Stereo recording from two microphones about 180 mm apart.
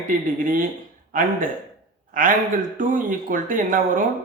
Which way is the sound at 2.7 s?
50° right (ahead or behind).